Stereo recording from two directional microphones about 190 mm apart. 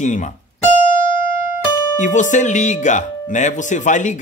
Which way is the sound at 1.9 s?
40° left (ahead or behind).